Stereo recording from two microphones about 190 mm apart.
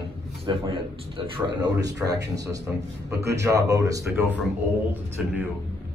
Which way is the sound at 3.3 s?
15° right (ahead or behind).